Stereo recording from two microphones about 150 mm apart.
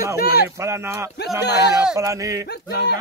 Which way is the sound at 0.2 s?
90° left.